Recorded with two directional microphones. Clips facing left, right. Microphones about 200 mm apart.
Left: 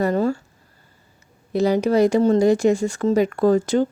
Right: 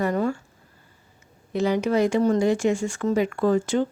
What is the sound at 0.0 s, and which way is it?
Speech, 35° left (ahead or behind).